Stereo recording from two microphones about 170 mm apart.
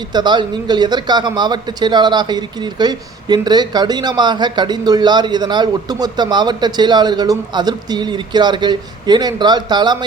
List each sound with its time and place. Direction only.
0.1 s a man's voice: 25° right (ahead or behind)